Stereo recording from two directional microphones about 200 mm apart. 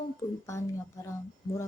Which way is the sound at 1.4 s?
20° left (ahead or behind).